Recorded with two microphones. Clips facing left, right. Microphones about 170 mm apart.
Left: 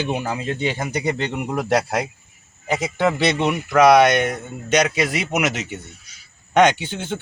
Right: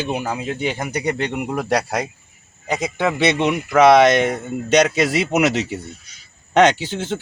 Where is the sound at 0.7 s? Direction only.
10° left (ahead or behind).